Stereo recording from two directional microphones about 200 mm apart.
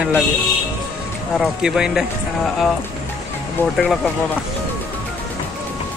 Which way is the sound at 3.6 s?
10° left (ahead or behind).